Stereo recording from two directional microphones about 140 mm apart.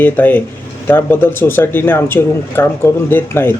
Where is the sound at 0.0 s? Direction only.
10° left (ahead or behind).